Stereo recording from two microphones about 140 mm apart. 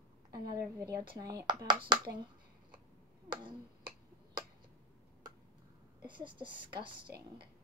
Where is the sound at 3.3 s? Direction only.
35° right (ahead or behind).